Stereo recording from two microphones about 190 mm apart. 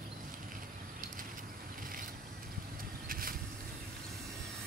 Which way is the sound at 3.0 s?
50° right (ahead or behind).